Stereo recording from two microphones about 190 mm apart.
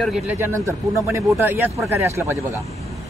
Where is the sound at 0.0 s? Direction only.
5° right (ahead or behind).